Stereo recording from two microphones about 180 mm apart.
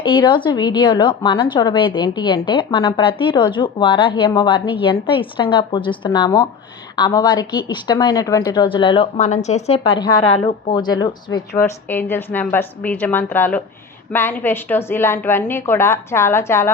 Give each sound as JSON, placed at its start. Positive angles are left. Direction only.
{"t": 0.0, "sound": "a woman's voice", "side_deg": 25}
{"t": 9.1, "sound": "a woman's voice", "side_deg": 40}